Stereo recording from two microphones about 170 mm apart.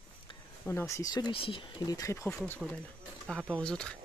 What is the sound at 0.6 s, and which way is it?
Speech, 15° left (ahead or behind).